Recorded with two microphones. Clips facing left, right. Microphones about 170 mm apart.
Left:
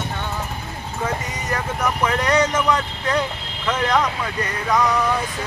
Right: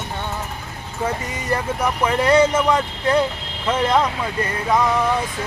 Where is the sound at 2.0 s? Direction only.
30° right (ahead or behind).